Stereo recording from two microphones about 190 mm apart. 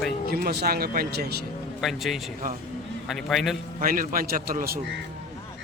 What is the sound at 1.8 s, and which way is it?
A man's voice, centre (ahead or behind).